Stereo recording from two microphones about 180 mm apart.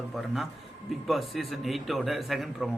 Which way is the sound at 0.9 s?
Centre (ahead or behind).